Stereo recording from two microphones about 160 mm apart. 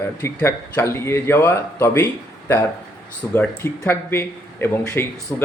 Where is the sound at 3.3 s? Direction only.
15° left (ahead or behind).